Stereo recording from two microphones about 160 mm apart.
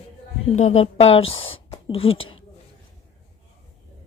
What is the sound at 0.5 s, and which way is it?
Speech, 45° left (ahead or behind).